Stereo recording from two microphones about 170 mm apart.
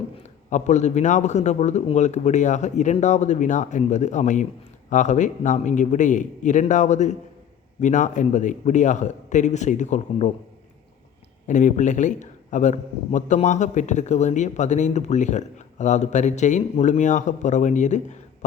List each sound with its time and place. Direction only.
0.2 s a man's voice: 40° left (ahead or behind)
11.4 s a man's voice: 45° left (ahead or behind)